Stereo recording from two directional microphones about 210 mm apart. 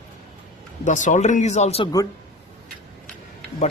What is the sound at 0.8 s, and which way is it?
Speech, 35° left (ahead or behind).